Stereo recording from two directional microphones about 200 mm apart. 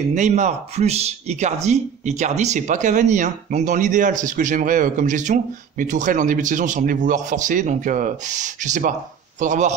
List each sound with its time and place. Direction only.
0.1 s speech: 35° right (ahead or behind)